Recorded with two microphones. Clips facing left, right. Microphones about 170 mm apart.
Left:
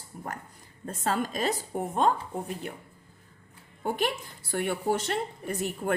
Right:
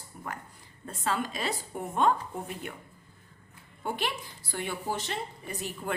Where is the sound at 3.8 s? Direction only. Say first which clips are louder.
Left 4 dB; 45° left (ahead or behind).